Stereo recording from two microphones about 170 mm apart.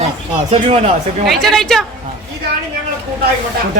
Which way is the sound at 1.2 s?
Centre (ahead or behind).